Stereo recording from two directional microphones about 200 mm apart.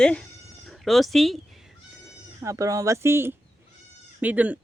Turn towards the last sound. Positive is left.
turn(degrees=-5)  # may be behind; listen again after turning